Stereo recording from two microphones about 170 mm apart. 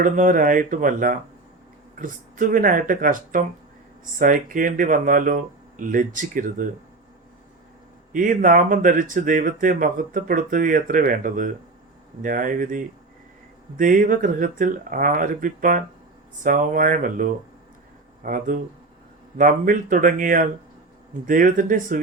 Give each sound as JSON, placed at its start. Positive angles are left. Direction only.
{"t": 0.0, "sound": "speech", "side_deg": -50}
{"t": 8.1, "sound": "speech", "side_deg": -50}